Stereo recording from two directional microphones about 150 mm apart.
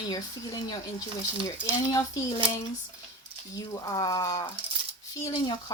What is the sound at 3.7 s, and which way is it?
Speech, 25° left (ahead or behind).